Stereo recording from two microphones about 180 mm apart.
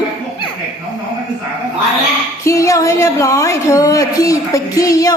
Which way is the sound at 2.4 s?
15° left (ahead or behind).